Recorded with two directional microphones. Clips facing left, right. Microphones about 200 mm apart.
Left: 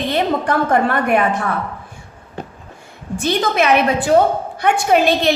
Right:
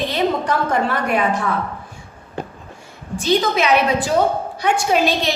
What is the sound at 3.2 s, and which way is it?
A woman's voice, 55° left (ahead or behind).